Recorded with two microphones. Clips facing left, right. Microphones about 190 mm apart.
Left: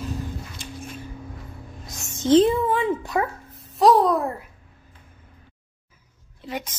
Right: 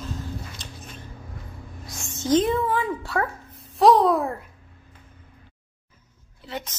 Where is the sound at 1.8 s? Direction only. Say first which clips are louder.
Left 4 dB; 25° left (ahead or behind).